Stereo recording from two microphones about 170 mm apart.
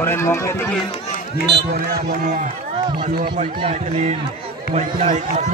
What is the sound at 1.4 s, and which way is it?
Speech, 75° right (ahead or behind).